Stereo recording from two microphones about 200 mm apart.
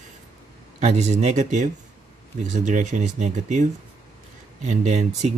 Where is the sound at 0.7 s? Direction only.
35° right (ahead or behind).